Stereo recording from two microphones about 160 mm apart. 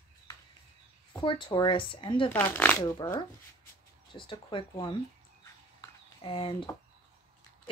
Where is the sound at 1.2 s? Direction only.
30° left (ahead or behind).